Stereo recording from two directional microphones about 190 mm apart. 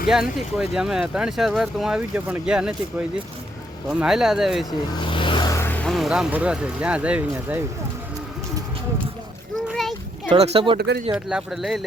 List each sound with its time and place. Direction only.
0.1 s speech: 5° right (ahead or behind)
3.8 s speech: centre (ahead or behind)
4.9 s speech: 25° left (ahead or behind); by 7.6 s 5° right (ahead or behind)
9.6 s a sound: centre (ahead or behind)
10.2 s speech: 35° right (ahead or behind)
10.8 s speech: 60° right (ahead or behind)
11.1 s speech: 5° right (ahead or behind)